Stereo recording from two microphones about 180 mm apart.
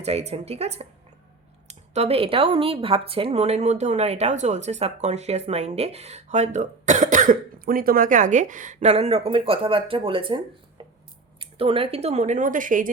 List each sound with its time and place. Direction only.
0.0 s speech: 35° right (ahead or behind)